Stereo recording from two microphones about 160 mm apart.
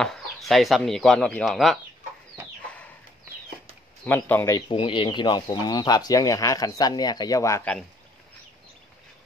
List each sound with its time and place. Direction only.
0.0 s speech: centre (ahead or behind)
4.0 s speech: 10° left (ahead or behind)